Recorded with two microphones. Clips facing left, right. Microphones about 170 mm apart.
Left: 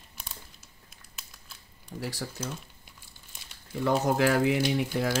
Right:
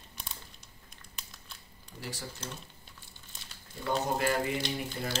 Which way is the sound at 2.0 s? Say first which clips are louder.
Left 6 dB; 70° left (ahead or behind).